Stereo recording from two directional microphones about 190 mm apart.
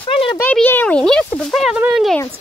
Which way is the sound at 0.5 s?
10° left (ahead or behind).